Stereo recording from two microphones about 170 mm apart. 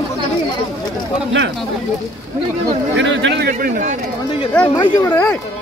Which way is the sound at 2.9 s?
90° right.